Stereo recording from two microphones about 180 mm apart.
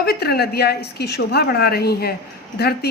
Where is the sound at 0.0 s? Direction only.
60° left (ahead or behind).